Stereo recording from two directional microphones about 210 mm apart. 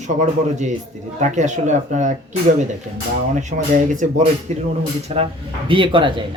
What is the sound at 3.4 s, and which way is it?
A man's voice, 35° right (ahead or behind).